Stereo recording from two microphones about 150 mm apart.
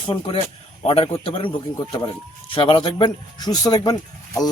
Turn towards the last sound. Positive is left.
turn(degrees=25)  # may be behind; listen again after turning